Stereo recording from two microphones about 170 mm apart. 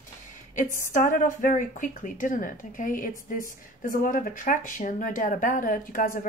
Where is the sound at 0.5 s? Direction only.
50° left (ahead or behind).